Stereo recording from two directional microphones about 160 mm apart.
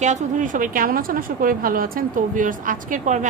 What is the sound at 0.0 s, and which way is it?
A woman's voice, 45° right (ahead or behind).